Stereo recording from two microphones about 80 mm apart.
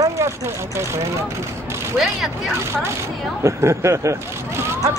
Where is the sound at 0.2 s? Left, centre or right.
Right.